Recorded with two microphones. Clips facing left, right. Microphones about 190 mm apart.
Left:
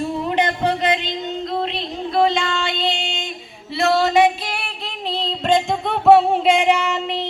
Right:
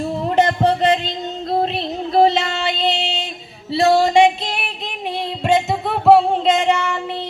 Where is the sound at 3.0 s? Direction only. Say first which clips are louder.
Right 3 dB; 35° right (ahead or behind).